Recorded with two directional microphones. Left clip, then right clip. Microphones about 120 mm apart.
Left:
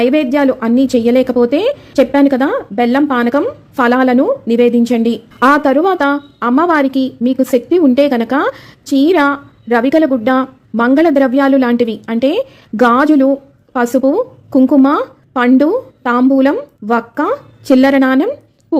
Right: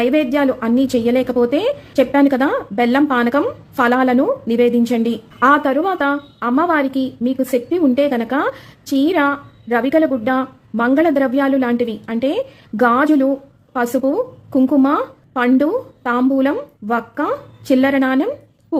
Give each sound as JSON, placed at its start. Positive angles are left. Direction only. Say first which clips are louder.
{"t": 0.0, "sound": "a woman's voice", "louder": "left 4 dB", "side_deg": 30}
{"t": 18.7, "sound": "patter", "louder": "left 5 dB", "side_deg": 30}